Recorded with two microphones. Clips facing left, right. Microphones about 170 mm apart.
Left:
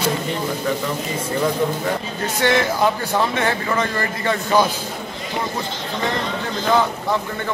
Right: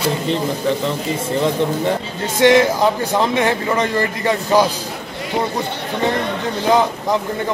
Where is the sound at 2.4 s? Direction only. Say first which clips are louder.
Right 6 dB; 15° right (ahead or behind).